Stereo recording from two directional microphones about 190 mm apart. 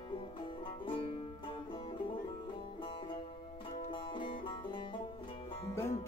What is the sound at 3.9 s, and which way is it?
Music, 25° left (ahead or behind).